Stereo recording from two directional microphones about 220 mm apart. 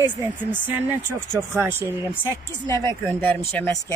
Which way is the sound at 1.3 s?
10° right (ahead or behind).